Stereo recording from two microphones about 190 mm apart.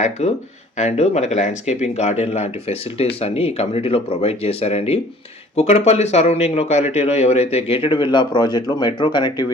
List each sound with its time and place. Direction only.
0.0 s speech: 35° left (ahead or behind)